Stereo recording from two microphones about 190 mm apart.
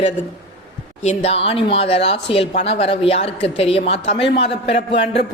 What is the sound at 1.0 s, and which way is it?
Speech, 30° left (ahead or behind).